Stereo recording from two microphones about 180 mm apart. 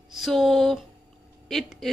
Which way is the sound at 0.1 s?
Centre (ahead or behind).